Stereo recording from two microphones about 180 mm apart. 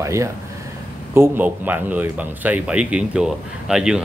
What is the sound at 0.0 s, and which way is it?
Speech, 15° right (ahead or behind).